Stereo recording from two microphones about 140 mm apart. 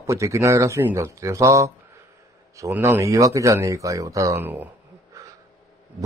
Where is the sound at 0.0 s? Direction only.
20° right (ahead or behind).